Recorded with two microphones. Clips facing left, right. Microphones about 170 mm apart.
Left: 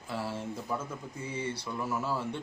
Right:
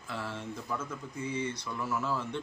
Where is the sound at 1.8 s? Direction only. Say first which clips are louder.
Even; 10° left (ahead or behind).